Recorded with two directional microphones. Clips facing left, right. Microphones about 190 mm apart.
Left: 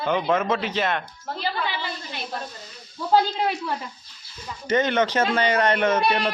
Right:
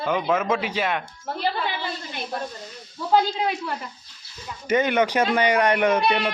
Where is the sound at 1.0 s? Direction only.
50° right (ahead or behind).